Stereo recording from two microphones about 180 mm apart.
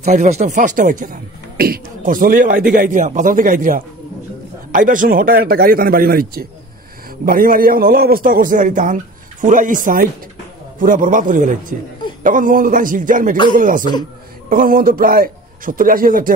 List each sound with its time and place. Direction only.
0.0 s a man's voice: 40° right (ahead or behind)